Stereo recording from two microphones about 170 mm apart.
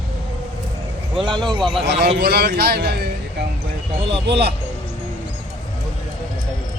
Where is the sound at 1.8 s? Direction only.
75° right (ahead or behind).